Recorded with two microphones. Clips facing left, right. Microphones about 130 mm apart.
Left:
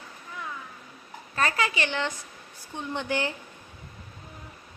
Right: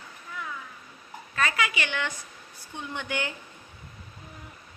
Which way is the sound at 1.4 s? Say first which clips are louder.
Left 1 dB; 35° left (ahead or behind).